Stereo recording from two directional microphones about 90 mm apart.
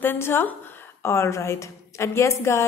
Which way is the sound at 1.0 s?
30° left (ahead or behind).